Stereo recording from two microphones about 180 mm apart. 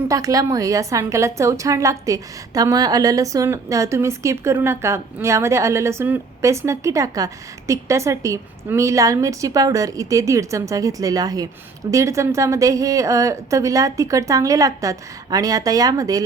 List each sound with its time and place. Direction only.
0.1 s a woman's voice: 20° right (ahead or behind)